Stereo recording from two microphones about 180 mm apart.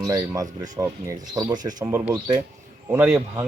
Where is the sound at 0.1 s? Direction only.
20° right (ahead or behind).